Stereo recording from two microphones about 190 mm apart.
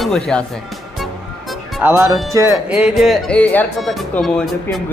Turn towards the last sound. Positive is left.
turn(degrees=0)  # may be behind; listen again after turning